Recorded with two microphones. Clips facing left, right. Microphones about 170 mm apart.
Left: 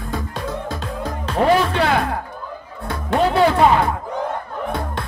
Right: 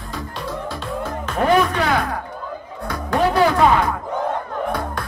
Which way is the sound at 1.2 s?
35° left (ahead or behind).